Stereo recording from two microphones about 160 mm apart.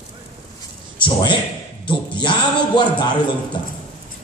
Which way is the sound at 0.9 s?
30° left (ahead or behind).